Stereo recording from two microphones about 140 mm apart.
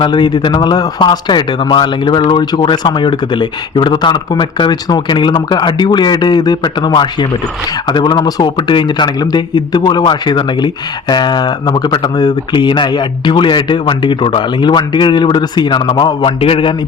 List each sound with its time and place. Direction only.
0.0 s speech: 35° left (ahead or behind)